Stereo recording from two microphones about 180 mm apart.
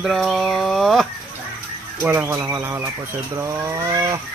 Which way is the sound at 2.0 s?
10° right (ahead or behind).